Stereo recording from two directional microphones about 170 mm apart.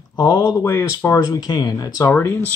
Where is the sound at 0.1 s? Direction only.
25° left (ahead or behind).